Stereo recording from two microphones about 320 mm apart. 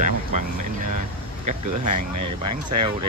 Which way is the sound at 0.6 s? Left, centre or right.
Right.